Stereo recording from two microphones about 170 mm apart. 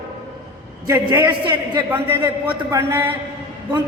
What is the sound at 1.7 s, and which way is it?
A woman's voice, 10° right (ahead or behind).